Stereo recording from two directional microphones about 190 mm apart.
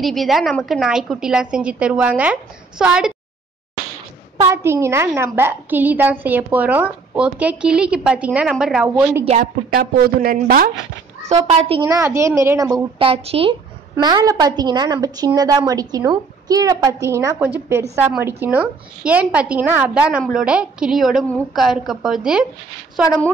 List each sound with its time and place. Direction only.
0.0 s a woman's voice: centre (ahead or behind)
4.5 s a woman's voice: 15° right (ahead or behind)
9.2 s a woman's voice: 35° right (ahead or behind)
9.7 s speech: 50° right (ahead or behind)
11.3 s a woman's voice: 20° right (ahead or behind)
14.0 s a woman's voice: 20° right (ahead or behind); by 23.3 s centre (ahead or behind)